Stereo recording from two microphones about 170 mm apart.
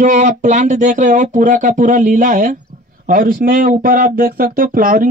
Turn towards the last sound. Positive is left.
turn(degrees=-55)  # may be behind; listen again after turning